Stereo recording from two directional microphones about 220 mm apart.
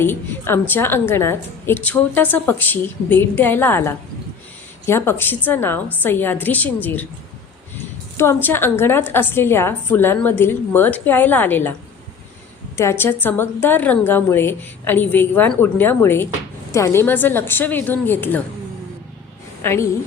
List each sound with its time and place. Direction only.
0.0 s a woman's voice: 10° left (ahead or behind)
8.1 s a woman's voice: 10° left (ahead or behind)
12.7 s a woman's voice: 10° left (ahead or behind)
19.6 s a woman's voice: 10° left (ahead or behind)